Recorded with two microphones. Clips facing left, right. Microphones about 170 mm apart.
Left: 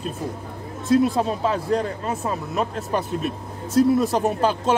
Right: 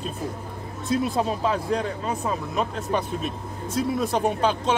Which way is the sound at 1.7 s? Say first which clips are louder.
Left 6 dB; 45° left (ahead or behind).